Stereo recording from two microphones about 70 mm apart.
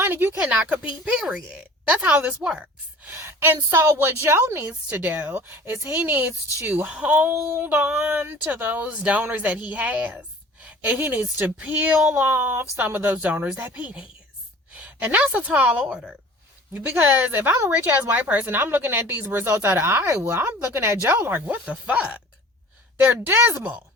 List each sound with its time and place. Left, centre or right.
0.0 s a woman's voice: right
0.3 s a woman's voice: centre
3.1 s a woman's voice: right
15.9 s speech: centre
16.7 s a woman's voice: right
23.2 s speech: right